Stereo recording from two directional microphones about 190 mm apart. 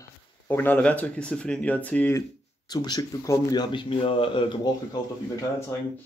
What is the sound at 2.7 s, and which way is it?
Speech, 20° left (ahead or behind).